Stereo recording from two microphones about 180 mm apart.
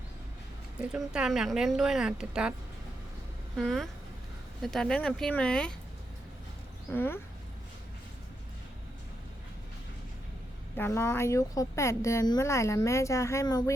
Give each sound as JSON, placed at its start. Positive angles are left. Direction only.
{"t": 0.8, "sound": "speech", "side_deg": -5}
{"t": 3.6, "sound": "speech", "side_deg": 0}
{"t": 6.9, "sound": "speech", "side_deg": 10}
{"t": 10.8, "sound": "speech", "side_deg": 15}